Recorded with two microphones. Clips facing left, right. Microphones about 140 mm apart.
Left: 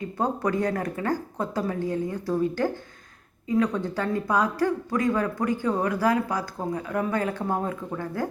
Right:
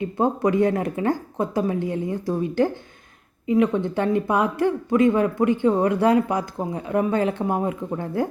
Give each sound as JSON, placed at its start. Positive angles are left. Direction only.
{"t": 0.0, "sound": "speech", "side_deg": -20}